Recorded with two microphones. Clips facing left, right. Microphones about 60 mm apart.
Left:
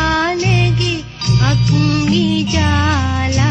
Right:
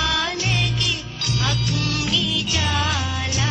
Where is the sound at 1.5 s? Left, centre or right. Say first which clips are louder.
Left 10 dB; left.